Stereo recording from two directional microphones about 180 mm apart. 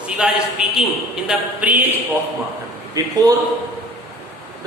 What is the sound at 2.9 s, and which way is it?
Speech, 20° right (ahead or behind).